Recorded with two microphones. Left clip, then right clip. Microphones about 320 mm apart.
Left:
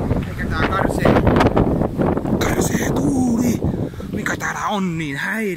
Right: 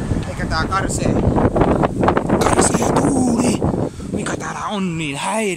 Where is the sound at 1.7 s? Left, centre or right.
Right.